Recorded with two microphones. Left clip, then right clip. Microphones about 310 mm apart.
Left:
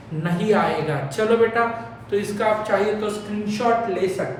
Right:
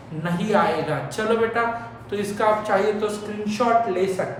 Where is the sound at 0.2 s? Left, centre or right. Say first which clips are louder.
Left 1 dB; centre.